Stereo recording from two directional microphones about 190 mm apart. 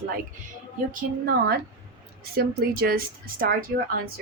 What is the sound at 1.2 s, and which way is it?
A woman's voice, 55° right (ahead or behind).